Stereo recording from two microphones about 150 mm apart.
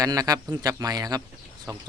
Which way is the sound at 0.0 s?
25° right (ahead or behind).